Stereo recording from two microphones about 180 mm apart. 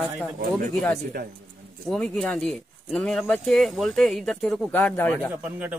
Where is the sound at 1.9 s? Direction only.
5° left (ahead or behind).